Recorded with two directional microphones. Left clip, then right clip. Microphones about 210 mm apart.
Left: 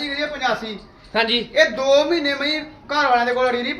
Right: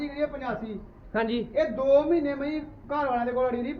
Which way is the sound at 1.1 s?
5° left (ahead or behind).